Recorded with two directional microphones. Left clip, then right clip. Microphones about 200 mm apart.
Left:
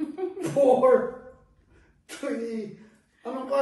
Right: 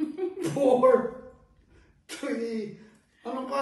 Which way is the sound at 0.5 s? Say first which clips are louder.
Left 3 dB; centre (ahead or behind).